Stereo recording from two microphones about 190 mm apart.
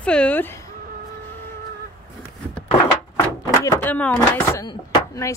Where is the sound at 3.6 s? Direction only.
10° left (ahead or behind).